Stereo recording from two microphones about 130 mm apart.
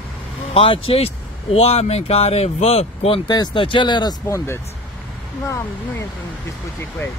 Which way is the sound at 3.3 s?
35° left (ahead or behind).